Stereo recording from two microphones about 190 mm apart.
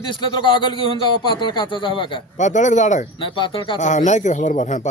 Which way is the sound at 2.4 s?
40° left (ahead or behind).